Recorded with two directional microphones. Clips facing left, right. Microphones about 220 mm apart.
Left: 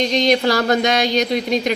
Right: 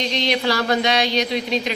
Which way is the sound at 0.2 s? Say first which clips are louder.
Left 4 dB; 45° left (ahead or behind).